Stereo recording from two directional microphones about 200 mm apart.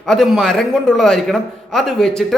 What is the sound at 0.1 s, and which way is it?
A man's voice, centre (ahead or behind).